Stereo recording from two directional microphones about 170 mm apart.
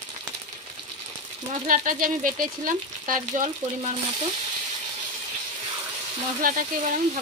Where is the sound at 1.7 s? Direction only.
50° right (ahead or behind).